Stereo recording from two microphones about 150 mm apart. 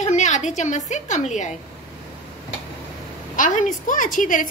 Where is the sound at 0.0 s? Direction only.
50° left (ahead or behind).